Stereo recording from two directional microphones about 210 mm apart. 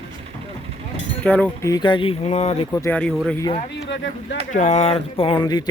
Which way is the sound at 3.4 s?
25° left (ahead or behind).